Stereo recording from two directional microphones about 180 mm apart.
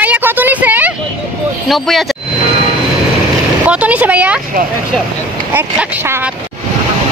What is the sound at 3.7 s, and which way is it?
Speech, 5° right (ahead or behind).